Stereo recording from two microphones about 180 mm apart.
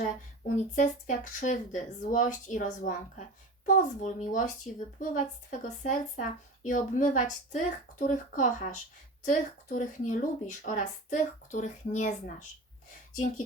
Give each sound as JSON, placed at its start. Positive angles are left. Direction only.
{"t": 0.0, "sound": "speech", "side_deg": 40}